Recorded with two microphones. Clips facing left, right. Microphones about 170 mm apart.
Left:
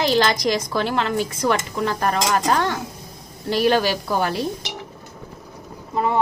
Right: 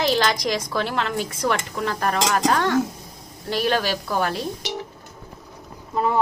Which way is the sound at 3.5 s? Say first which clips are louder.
Left 4 dB; 10° left (ahead or behind).